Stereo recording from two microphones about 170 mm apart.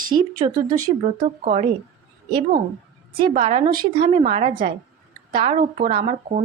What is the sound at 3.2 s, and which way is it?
Speech, 35° right (ahead or behind).